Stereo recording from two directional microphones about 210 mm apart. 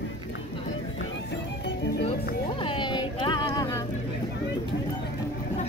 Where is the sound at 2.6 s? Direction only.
25° left (ahead or behind).